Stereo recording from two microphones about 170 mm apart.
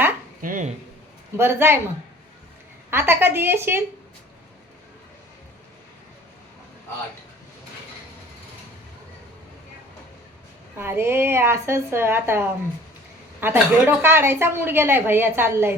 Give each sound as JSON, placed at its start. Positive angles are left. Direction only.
{"t": 0.4, "sound": "speech", "side_deg": -50}
{"t": 1.4, "sound": "a woman's voice", "side_deg": -15}
{"t": 2.9, "sound": "a woman's voice", "side_deg": -15}
{"t": 10.8, "sound": "a woman's voice", "side_deg": -15}